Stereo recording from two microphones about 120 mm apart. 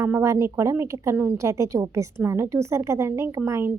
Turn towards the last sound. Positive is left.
turn(degrees=-25)  # may be behind; listen again after turning